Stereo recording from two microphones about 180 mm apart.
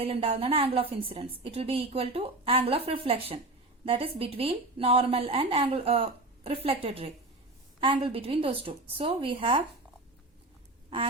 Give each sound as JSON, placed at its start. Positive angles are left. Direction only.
{"t": 0.0, "sound": "a woman's voice", "side_deg": -35}